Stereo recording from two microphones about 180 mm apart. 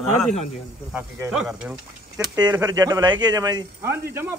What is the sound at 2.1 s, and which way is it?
A man's voice, 20° right (ahead or behind).